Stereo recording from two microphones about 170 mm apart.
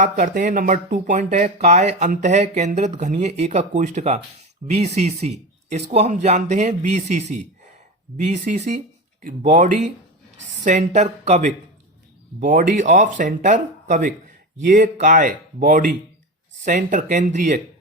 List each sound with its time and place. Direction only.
0.0 s speech: 50° right (ahead or behind)